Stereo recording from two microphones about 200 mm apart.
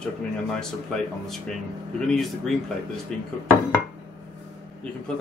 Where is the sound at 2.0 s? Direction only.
Centre (ahead or behind).